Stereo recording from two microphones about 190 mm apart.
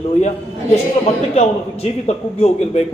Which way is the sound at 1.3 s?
35° left (ahead or behind).